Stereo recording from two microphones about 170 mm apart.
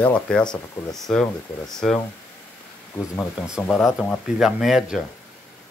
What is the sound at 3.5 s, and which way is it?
Speech, centre (ahead or behind).